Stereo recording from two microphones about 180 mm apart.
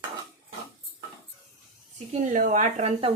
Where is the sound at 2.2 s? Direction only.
45° right (ahead or behind).